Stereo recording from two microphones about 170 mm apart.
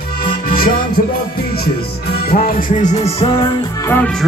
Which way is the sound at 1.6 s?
65° left (ahead or behind).